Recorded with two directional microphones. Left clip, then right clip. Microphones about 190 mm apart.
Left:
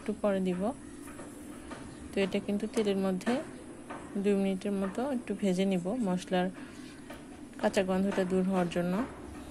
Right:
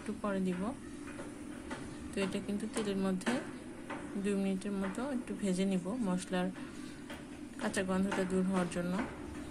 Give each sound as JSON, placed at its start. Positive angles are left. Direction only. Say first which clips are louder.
{"t": 0.2, "sound": "speech", "louder": "left 7 dB", "side_deg": 30}
{"t": 2.1, "sound": "speech", "louder": "left 6 dB", "side_deg": 30}
{"t": 7.6, "sound": "speech", "louder": "left 7 dB", "side_deg": 30}